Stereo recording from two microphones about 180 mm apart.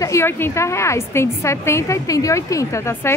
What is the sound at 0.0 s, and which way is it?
Speech, 15° left (ahead or behind).